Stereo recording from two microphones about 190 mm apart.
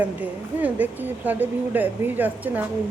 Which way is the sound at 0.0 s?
10° right (ahead or behind).